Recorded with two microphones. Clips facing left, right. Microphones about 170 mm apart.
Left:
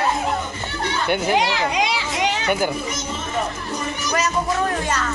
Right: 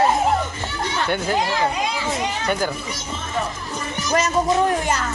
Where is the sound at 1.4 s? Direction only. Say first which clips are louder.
Left 1 dB; 80° left.